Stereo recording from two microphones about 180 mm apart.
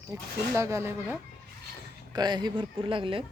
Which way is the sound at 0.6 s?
15° right (ahead or behind).